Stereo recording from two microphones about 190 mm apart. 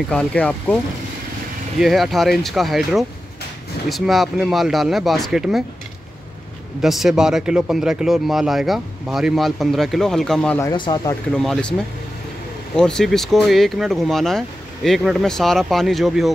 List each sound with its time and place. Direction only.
0.1 s speech: 5° left (ahead or behind)
1.8 s speech: centre (ahead or behind)
6.8 s speech: centre (ahead or behind)
10.6 s speech: 25° left (ahead or behind)
11.3 s speech: 5° left (ahead or behind)
12.7 s speech: 5° left (ahead or behind)